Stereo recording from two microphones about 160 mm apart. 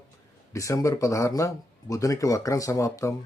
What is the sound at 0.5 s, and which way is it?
Speech, 20° left (ahead or behind).